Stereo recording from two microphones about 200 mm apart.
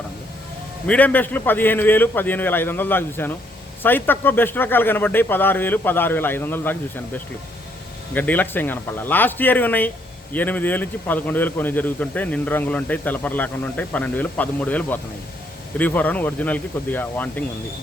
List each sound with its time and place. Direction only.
0.9 s a man's voice: 10° left (ahead or behind)